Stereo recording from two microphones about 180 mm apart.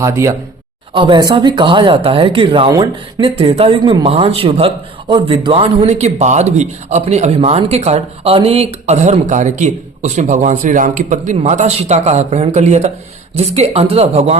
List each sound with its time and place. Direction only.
0.0 s a man's voice: 15° right (ahead or behind); by 14.3 s 35° right (ahead or behind)